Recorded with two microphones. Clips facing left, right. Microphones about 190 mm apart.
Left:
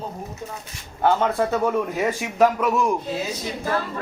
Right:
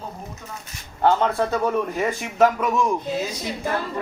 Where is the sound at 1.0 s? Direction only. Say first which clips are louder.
Even; 10° left (ahead or behind).